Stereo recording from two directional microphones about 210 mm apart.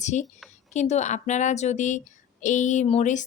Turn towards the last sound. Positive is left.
turn(degrees=35)  # may be behind; listen again after turning